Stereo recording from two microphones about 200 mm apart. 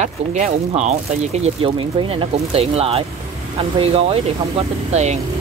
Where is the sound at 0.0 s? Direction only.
35° right (ahead or behind).